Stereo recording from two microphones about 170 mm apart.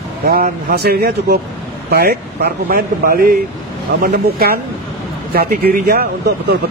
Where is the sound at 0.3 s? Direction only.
65° right (ahead or behind).